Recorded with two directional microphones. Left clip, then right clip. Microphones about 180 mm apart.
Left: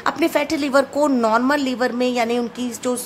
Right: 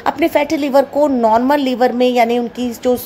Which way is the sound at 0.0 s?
5° right (ahead or behind).